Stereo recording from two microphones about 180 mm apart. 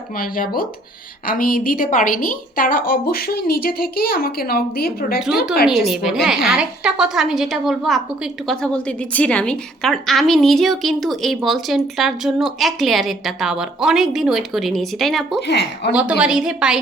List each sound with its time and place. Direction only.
0.2 s a woman's voice: 55° left (ahead or behind)
5.9 s a woman's voice: 5° right (ahead or behind)
15.4 s a woman's voice: 70° left (ahead or behind)
15.9 s a woman's voice: 5° right (ahead or behind)